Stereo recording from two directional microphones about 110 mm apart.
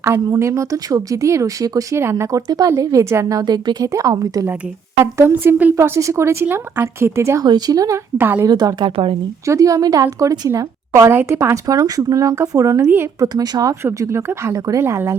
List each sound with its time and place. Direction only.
0.0 s a woman's voice: 25° right (ahead or behind)
5.1 s speech: 20° right (ahead or behind)
7.4 s a woman's voice: 35° right (ahead or behind)
8.2 s speech: 20° right (ahead or behind)
8.4 s a woman's voice: 40° right (ahead or behind)
9.5 s speech: 30° right (ahead or behind)
11.6 s a woman's voice: 35° right (ahead or behind)
13.2 s a woman's voice: 35° right (ahead or behind)